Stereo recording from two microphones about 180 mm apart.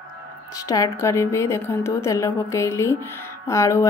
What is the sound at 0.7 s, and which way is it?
A woman's voice, 20° left (ahead or behind).